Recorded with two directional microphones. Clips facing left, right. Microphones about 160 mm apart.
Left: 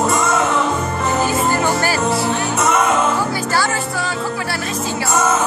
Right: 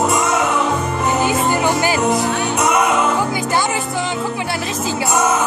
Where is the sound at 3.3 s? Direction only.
20° right (ahead or behind).